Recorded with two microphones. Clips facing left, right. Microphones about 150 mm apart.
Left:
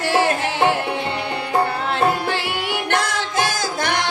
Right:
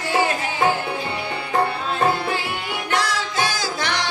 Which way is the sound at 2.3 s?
70° left (ahead or behind).